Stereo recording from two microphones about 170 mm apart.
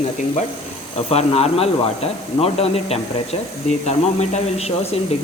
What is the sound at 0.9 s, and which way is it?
A man's voice, 35° left (ahead or behind).